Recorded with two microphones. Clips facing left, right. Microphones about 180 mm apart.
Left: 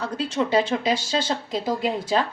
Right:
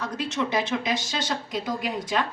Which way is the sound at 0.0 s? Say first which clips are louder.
Left 3 dB; 30° left (ahead or behind).